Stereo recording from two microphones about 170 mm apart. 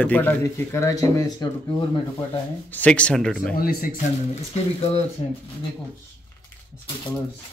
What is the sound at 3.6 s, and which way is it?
Speech, 60° left (ahead or behind).